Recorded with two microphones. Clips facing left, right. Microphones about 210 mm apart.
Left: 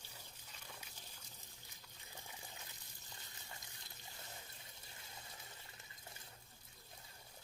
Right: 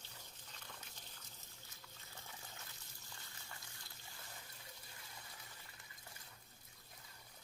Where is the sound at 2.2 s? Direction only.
15° left (ahead or behind).